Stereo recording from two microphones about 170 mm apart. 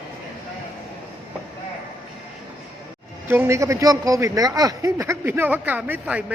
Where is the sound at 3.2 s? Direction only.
15° right (ahead or behind).